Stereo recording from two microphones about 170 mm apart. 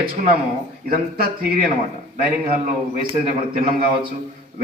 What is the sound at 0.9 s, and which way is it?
A man's voice, 60° right (ahead or behind).